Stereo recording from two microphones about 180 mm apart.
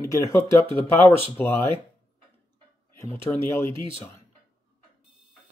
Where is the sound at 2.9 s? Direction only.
15° left (ahead or behind).